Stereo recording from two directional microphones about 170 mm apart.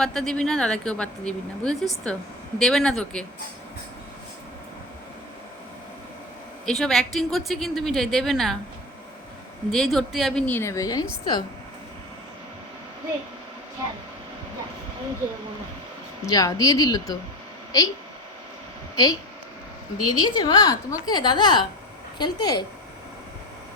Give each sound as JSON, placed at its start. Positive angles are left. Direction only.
{"t": 0.0, "sound": "a woman's voice", "side_deg": 5}
{"t": 6.7, "sound": "a woman's voice", "side_deg": 0}
{"t": 9.7, "sound": "a woman's voice", "side_deg": 0}
{"t": 16.2, "sound": "a woman's voice", "side_deg": 20}
{"t": 18.9, "sound": "a woman's voice", "side_deg": 20}